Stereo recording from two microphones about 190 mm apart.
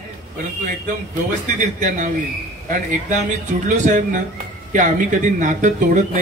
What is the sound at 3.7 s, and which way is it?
A man's voice, 40° right (ahead or behind).